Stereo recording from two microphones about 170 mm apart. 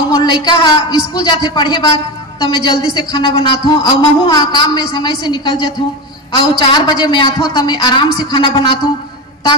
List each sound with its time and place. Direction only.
0.1 s a woman's voice: 25° left (ahead or behind)